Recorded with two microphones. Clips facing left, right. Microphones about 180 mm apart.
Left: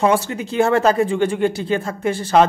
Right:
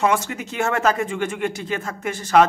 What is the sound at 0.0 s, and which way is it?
Speech, 35° left (ahead or behind).